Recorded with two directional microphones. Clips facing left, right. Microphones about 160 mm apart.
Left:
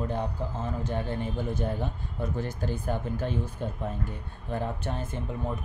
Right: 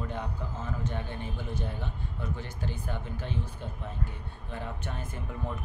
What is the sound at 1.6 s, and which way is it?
Speech, 40° left (ahead or behind).